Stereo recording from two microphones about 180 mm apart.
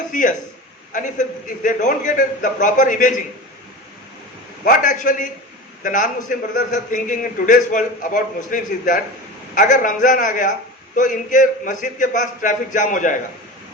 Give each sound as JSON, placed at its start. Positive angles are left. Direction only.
{"t": 0.1, "sound": "a man's voice", "side_deg": 45}
{"t": 4.6, "sound": "a man's voice", "side_deg": 45}